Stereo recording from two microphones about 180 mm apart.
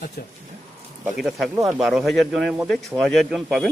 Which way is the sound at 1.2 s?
Centre (ahead or behind).